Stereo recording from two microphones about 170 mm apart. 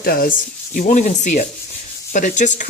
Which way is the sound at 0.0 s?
60° left (ahead or behind).